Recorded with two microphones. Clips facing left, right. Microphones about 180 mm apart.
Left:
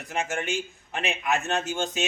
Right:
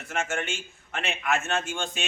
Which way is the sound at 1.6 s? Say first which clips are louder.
Left 4 dB; 40° left (ahead or behind).